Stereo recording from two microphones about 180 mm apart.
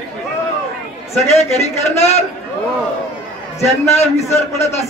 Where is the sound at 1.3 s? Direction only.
35° left (ahead or behind).